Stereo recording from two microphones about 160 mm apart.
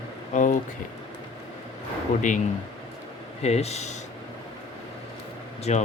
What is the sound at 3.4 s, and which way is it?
Speech, 40° left (ahead or behind).